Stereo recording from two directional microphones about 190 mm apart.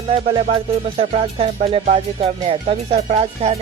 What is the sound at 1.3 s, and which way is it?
Speech, 30° right (ahead or behind).